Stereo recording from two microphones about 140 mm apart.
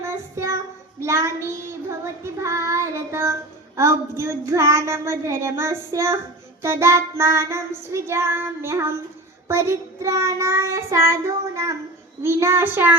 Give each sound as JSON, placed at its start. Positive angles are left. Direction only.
{"t": 0.0, "sound": "child singing", "side_deg": -20}
{"t": 12.2, "sound": "a woman's voice", "side_deg": -20}